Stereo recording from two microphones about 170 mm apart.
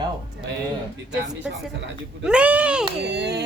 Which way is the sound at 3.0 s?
75° right (ahead or behind).